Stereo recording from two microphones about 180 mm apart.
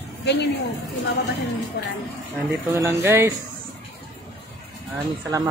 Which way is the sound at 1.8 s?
70° left (ahead or behind).